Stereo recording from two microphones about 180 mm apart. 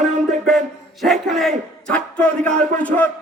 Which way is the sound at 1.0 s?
Centre (ahead or behind).